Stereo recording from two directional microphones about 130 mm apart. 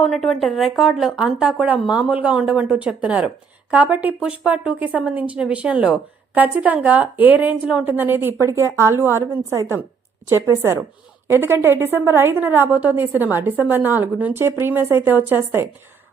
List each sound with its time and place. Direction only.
0.0 s a woman's voice: centre (ahead or behind); by 15.6 s 15° right (ahead or behind)